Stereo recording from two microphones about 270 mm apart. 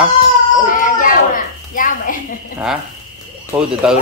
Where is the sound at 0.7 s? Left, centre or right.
Left.